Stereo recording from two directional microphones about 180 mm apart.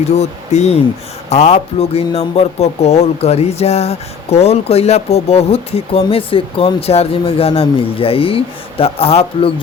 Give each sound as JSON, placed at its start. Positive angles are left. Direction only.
{"t": 0.2, "sound": "speech", "side_deg": 40}